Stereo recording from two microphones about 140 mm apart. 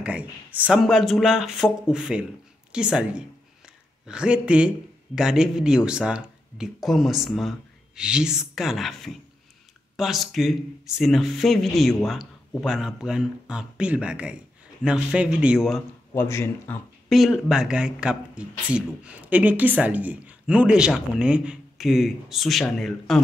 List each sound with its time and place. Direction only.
0.0 s a man's voice: 10° right (ahead or behind)
16.2 s speech: 15° left (ahead or behind)
17.1 s speech: centre (ahead or behind)